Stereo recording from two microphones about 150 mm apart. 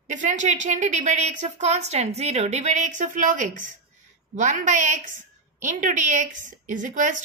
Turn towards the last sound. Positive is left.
turn(degrees=-55)  # may be behind; listen again after turning